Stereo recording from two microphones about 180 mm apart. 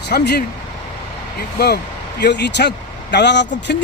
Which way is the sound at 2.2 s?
70° left (ahead or behind).